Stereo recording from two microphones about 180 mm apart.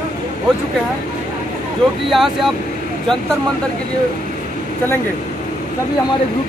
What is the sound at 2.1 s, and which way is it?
Speech, centre (ahead or behind).